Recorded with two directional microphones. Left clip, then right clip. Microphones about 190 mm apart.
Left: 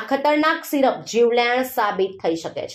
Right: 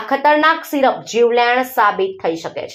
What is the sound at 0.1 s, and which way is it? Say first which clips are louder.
A woman's voice: right 6 dB; 15° right (ahead or behind).